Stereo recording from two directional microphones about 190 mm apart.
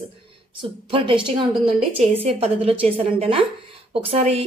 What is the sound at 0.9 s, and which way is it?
A woman's voice, 25° right (ahead or behind).